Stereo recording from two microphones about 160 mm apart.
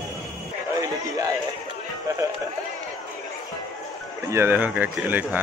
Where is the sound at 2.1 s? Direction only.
20° right (ahead or behind).